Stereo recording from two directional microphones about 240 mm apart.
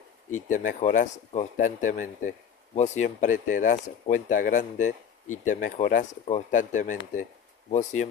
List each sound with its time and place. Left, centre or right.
0.4 s speech: left